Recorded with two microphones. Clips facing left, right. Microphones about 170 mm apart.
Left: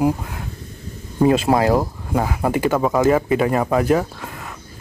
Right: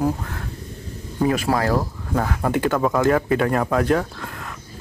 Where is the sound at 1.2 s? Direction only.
25° left (ahead or behind).